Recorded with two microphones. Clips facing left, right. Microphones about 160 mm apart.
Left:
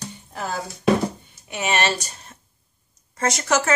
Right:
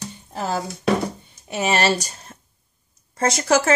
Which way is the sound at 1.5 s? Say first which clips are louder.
Right 3 dB; 35° right (ahead or behind).